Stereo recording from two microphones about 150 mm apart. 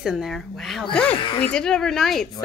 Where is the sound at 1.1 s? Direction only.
35° left (ahead or behind).